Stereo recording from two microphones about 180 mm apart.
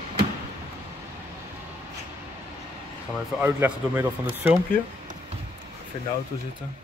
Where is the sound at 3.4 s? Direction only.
10° right (ahead or behind).